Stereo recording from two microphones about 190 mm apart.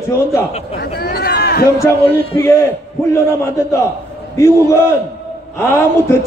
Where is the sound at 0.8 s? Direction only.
55° left (ahead or behind).